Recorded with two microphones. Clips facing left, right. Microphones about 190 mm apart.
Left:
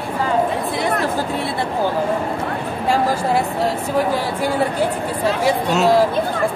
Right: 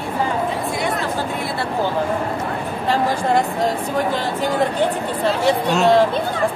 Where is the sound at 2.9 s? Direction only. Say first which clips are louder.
Even; 10° left (ahead or behind).